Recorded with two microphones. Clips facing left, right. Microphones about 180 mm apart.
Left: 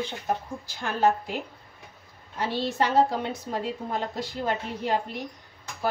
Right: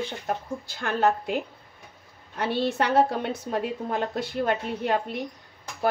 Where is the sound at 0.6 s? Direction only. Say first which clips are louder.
Even; 60° right (ahead or behind).